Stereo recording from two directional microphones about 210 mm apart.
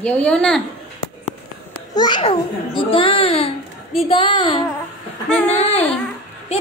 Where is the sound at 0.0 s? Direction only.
5° left (ahead or behind).